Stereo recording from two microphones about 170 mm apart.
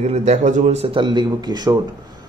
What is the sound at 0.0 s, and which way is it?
A man's voice, 40° right (ahead or behind).